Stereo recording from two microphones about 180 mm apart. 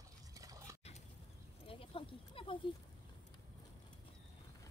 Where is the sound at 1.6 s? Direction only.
30° left (ahead or behind).